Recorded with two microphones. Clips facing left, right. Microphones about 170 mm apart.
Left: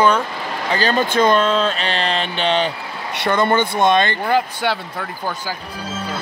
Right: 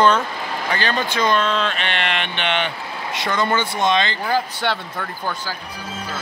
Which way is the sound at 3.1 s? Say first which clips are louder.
Left 4 dB; 60° left (ahead or behind).